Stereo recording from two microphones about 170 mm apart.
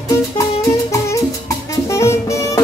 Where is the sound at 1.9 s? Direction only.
15° left (ahead or behind).